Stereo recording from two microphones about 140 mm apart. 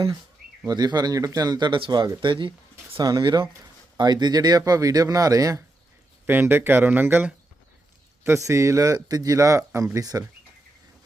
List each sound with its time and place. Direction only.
0.7 s speech: 30° right (ahead or behind)
6.2 s speech: 15° right (ahead or behind)